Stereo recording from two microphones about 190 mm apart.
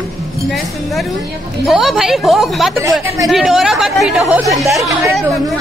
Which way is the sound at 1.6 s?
Centre (ahead or behind).